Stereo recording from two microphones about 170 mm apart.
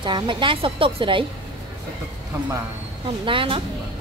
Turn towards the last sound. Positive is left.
turn(degrees=-30)  # may be behind; listen again after turning